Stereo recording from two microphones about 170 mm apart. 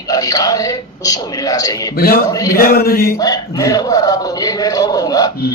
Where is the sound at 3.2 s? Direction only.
20° left (ahead or behind).